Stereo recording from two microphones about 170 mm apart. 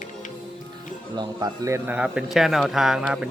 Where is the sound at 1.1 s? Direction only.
20° right (ahead or behind).